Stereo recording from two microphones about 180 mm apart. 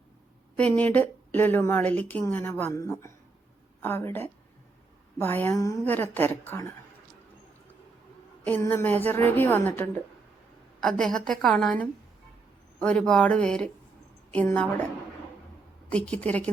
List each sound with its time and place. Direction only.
0.5 s a woman's voice: 10° left (ahead or behind)
8.4 s a woman's voice: 10° left (ahead or behind)
15.9 s a woman's voice: 5° left (ahead or behind)